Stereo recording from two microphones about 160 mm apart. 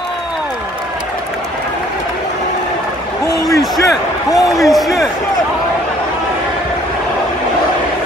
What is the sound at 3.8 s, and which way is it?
Slam, 20° left (ahead or behind).